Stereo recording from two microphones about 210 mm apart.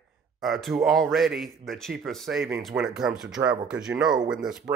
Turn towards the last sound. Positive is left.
turn(degrees=-20)  # may be behind; listen again after turning